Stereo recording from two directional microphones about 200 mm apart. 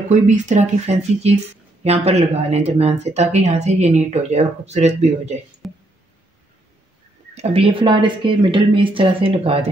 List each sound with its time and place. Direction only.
0.1 s speech: 35° right (ahead or behind)
5.6 s a sound: centre (ahead or behind)
7.3 s speech: 30° right (ahead or behind)